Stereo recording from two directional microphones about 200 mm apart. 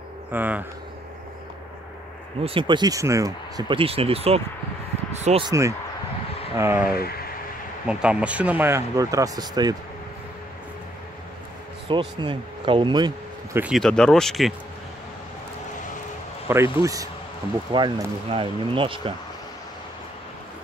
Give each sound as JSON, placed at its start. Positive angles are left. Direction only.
{"t": 0.3, "sound": "speech", "side_deg": -10}
{"t": 2.4, "sound": "speech", "side_deg": -25}
{"t": 5.5, "sound": "speech", "side_deg": -15}
{"t": 7.0, "sound": "speech", "side_deg": 50}
{"t": 7.8, "sound": "speech", "side_deg": -5}
{"t": 11.9, "sound": "speech", "side_deg": -25}
{"t": 13.6, "sound": "speech", "side_deg": 0}
{"t": 16.4, "sound": "speech", "side_deg": -10}